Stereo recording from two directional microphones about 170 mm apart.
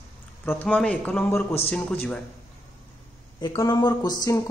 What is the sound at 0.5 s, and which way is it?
Speech, 10° left (ahead or behind).